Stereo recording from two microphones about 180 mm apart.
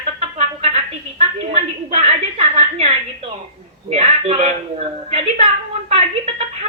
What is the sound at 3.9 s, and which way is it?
A woman's voice, 35° right (ahead or behind).